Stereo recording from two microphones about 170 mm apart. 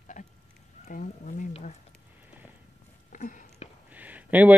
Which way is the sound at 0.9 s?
50° left (ahead or behind).